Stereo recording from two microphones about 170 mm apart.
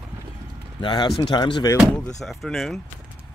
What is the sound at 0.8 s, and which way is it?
Speech, 30° left (ahead or behind).